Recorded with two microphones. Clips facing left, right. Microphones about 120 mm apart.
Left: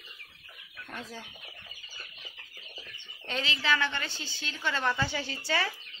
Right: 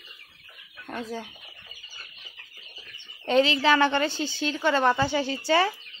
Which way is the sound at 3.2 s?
60° right (ahead or behind).